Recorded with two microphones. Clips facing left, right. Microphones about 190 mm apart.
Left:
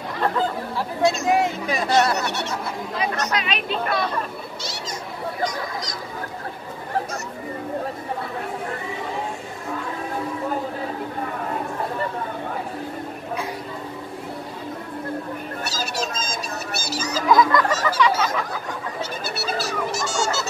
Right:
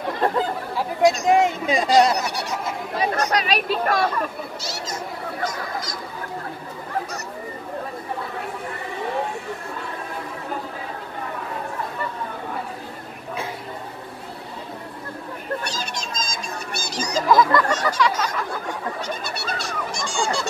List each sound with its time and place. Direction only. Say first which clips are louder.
0.7 s speech: right 3 dB; 15° right (ahead or behind)
3.0 s speech: right 3 dB; 30° right (ahead or behind)
15.6 s music: left 3 dB; 5° left (ahead or behind)
19.0 s a sound: left 1 dB; 5° left (ahead or behind)